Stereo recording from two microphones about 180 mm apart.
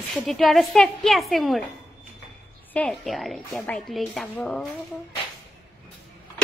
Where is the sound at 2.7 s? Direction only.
Centre (ahead or behind).